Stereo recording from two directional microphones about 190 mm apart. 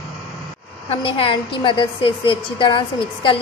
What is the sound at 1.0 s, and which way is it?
A woman's voice, 25° left (ahead or behind).